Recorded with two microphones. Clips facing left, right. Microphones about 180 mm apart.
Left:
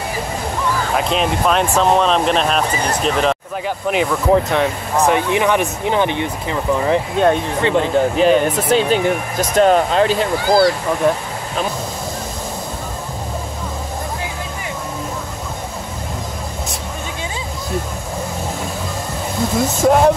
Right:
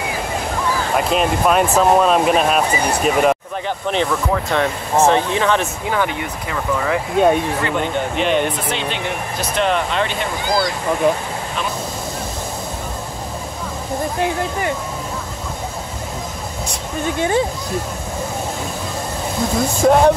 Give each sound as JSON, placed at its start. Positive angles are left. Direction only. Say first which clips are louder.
{"t": 0.9, "sound": "speech", "louder": "right 2 dB", "side_deg": -5}
{"t": 3.6, "sound": "speech", "louder": "left 2 dB", "side_deg": 5}
{"t": 4.3, "sound": "speech", "louder": "left 4 dB", "side_deg": 20}
{"t": 11.0, "sound": "speech", "louder": "even", "side_deg": 0}
{"t": 17.2, "sound": "speech", "louder": "right 15 dB", "side_deg": -60}
{"t": 19.8, "sound": "speech", "louder": "even", "side_deg": 0}